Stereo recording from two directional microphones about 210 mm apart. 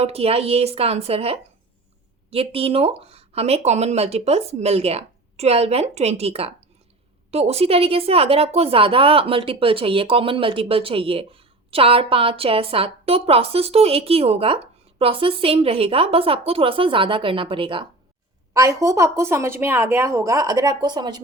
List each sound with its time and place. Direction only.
0.0 s a woman's voice: 30° right (ahead or behind)